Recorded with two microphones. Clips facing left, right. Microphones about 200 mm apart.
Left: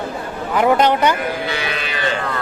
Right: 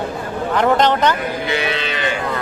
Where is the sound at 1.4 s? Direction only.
20° right (ahead or behind).